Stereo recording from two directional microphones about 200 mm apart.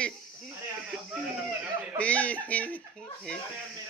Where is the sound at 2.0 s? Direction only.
5° left (ahead or behind).